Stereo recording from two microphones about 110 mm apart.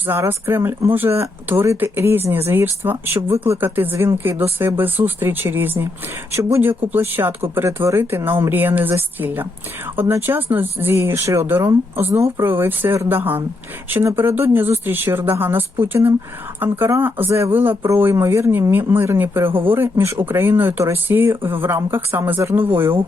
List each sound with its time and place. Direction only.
0.0 s speech: 20° right (ahead or behind)